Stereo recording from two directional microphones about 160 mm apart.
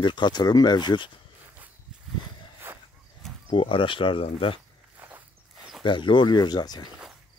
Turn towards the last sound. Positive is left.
turn(degrees=25)  # may be behind; listen again after turning